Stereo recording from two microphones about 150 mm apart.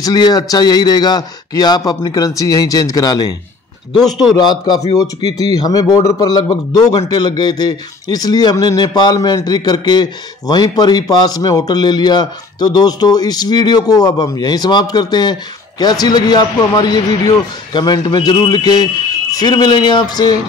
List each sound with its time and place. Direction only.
0.0 s a man's voice: 25° left (ahead or behind)
3.9 s a man's voice: centre (ahead or behind)
4.3 s a man's voice: 30° left (ahead or behind)